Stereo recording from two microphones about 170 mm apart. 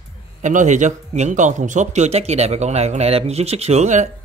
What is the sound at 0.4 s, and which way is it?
A man's voice, 45° right (ahead or behind).